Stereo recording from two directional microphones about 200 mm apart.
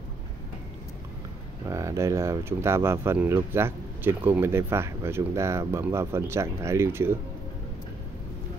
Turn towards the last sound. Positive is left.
turn(degrees=-10)  # may be behind; listen again after turning